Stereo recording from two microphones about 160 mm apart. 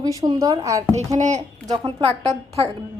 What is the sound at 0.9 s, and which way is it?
Speech, 45° right (ahead or behind).